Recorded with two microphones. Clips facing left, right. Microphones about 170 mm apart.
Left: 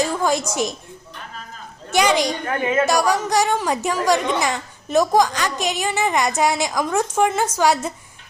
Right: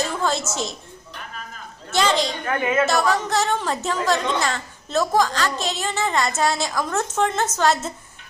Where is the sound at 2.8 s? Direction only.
15° left (ahead or behind).